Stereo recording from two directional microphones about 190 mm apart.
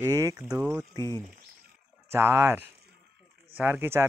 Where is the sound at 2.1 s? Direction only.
15° right (ahead or behind).